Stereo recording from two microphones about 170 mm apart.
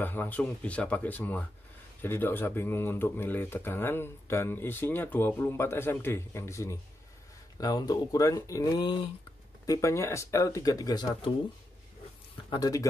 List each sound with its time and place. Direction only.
0.0 s speech: 10° left (ahead or behind)
12.4 s speech: 20° left (ahead or behind)